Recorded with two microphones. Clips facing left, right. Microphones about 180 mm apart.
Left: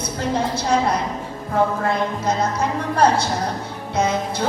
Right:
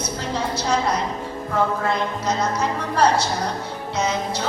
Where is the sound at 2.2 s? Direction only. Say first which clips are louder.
Left 1 dB; 55° left (ahead or behind).